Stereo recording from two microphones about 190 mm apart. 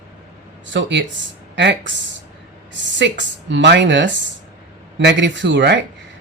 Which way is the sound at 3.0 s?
70° right (ahead or behind).